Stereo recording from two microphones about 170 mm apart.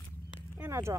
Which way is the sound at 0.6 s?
15° right (ahead or behind).